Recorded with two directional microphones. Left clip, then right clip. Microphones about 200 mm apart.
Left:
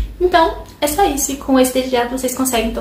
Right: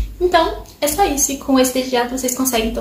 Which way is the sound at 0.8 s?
10° left (ahead or behind).